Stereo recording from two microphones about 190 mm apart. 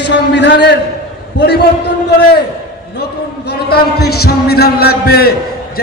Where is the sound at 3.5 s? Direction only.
55° left (ahead or behind).